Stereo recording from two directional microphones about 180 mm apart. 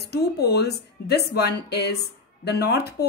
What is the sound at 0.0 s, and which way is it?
Speech, 65° left (ahead or behind).